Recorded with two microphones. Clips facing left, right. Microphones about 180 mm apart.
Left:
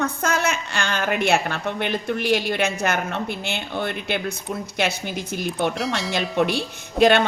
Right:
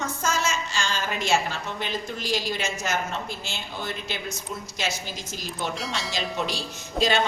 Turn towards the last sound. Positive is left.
turn(degrees=60)  # may be behind; listen again after turning